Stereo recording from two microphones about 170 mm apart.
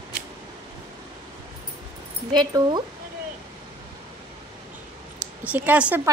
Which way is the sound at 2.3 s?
25° right (ahead or behind).